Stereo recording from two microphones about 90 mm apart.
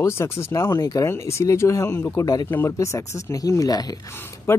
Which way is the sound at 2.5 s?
30° left (ahead or behind).